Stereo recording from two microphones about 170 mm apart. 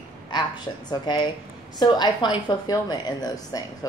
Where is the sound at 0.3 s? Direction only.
25° left (ahead or behind).